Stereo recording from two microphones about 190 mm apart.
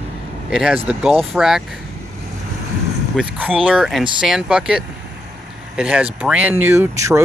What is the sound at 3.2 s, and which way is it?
Speech, 5° right (ahead or behind).